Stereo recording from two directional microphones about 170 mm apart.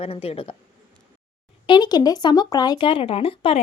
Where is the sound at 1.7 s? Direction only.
25° left (ahead or behind).